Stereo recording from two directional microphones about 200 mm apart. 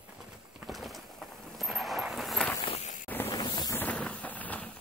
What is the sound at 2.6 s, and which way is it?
Walk, 35° left (ahead or behind).